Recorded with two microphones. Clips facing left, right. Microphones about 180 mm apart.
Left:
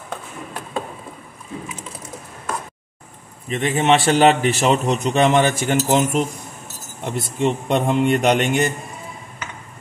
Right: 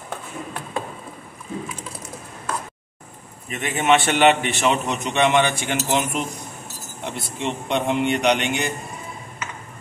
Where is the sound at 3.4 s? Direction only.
30° left (ahead or behind).